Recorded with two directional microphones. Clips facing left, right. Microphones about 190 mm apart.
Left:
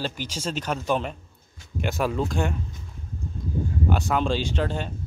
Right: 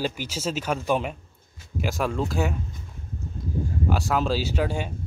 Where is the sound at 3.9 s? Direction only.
Centre (ahead or behind).